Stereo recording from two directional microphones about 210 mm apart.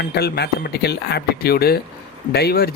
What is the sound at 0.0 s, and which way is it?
Speech, 50° left (ahead or behind).